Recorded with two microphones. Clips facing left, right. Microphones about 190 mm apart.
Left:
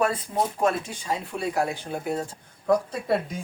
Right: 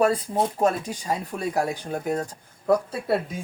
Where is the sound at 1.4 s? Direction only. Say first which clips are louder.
Left 1 dB; 40° right (ahead or behind).